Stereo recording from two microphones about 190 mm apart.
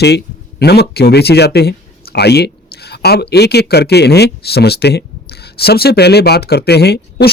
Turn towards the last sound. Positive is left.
turn(degrees=55)  # may be behind; listen again after turning